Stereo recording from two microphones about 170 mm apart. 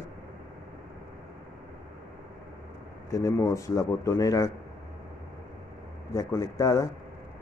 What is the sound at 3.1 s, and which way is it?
Speech, 20° left (ahead or behind).